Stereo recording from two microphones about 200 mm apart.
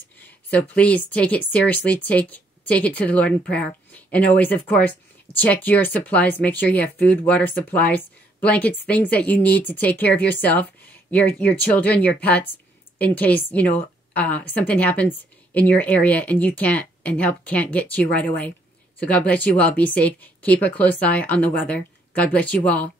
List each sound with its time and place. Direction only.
0.2 s speech: 5° left (ahead or behind)